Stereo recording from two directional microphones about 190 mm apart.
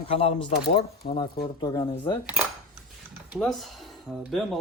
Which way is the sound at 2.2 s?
5° right (ahead or behind).